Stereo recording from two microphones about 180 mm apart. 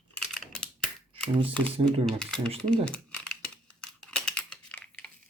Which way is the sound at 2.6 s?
5° left (ahead or behind).